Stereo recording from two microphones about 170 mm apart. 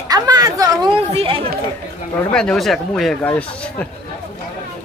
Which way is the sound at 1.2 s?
35° right (ahead or behind).